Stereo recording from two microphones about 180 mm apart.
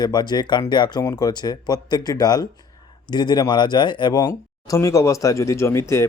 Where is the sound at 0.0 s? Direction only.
25° left (ahead or behind).